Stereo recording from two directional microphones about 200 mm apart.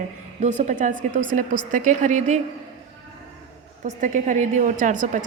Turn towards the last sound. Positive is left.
turn(degrees=-40)  # may be behind; listen again after turning